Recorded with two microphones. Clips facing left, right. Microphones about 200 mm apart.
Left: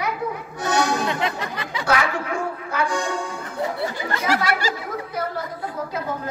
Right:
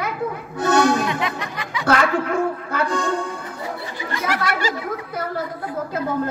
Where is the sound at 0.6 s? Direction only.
60° right (ahead or behind).